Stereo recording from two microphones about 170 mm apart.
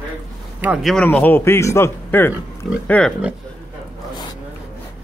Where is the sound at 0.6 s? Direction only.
10° right (ahead or behind).